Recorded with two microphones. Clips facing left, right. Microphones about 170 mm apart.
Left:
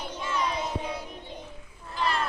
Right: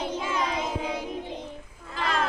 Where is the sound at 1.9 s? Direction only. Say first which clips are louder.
Right 1 dB; 90° right.